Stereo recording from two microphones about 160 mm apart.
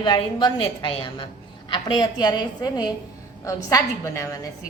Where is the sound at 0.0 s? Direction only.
30° left (ahead or behind).